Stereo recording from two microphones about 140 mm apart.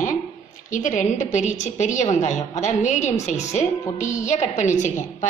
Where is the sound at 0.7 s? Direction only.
65° left (ahead or behind).